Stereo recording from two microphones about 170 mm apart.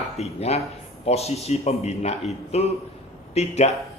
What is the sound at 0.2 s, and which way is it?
A man's voice, 40° left (ahead or behind).